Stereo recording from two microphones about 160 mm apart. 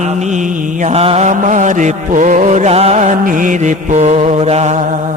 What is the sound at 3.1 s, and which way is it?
Mantra, 60° right (ahead or behind).